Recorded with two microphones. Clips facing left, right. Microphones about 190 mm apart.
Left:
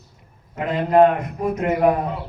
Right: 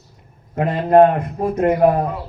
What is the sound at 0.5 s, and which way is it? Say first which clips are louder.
Speech: right 3 dB; 55° right (ahead or behind).